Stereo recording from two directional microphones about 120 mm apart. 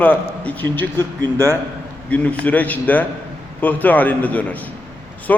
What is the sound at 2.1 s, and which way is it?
A man's voice, 10° left (ahead or behind).